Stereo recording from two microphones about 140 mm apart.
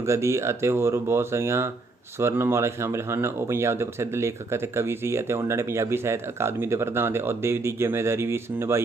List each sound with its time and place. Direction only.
0.0 s speech: 20° right (ahead or behind)